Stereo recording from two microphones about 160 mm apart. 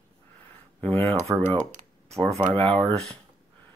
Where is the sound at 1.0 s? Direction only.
40° right (ahead or behind).